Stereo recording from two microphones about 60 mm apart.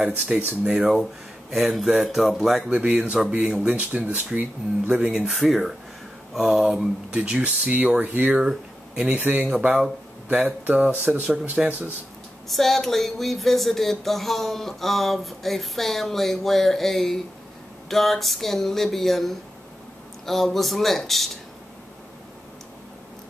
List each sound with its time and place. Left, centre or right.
0.3 s speech: centre
1.5 s speech: centre
2.7 s speech: right
5.0 s speech: centre
7.2 s speech: right
8.5 s a sound: centre
9.1 s speech: right
12.4 s speech: centre